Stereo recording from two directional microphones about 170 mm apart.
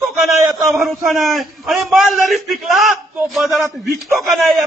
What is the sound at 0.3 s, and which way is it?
A man's voice, centre (ahead or behind).